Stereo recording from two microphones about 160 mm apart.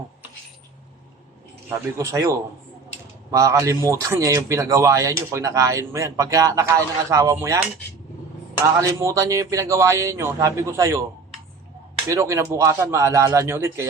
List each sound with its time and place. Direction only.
2.0 s speech: 20° right (ahead or behind)
3.3 s speech: 20° right (ahead or behind)
8.8 s speech: 20° right (ahead or behind)
12.0 s speech: 20° right (ahead or behind)